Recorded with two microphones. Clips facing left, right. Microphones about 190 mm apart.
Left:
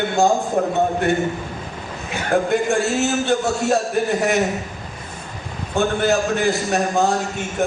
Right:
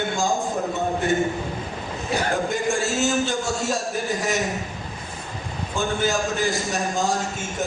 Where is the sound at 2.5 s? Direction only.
60° left (ahead or behind).